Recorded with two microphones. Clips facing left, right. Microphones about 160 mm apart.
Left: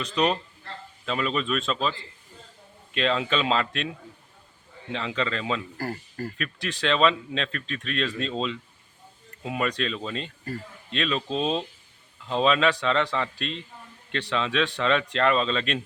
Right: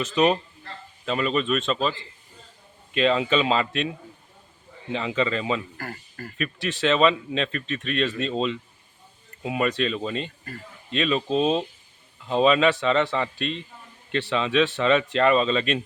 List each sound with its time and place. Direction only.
0.0 s speech: 5° right (ahead or behind)
5.7 s speech: 35° left (ahead or behind)
6.3 s speech: centre (ahead or behind)